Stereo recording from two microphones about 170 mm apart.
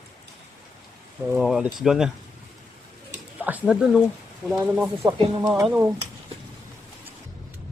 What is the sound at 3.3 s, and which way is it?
Speech, 10° right (ahead or behind).